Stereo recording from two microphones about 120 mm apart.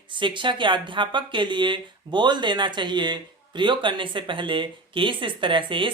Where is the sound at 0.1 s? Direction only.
40° right (ahead or behind).